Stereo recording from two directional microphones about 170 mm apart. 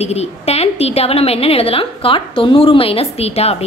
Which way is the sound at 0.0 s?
40° left (ahead or behind).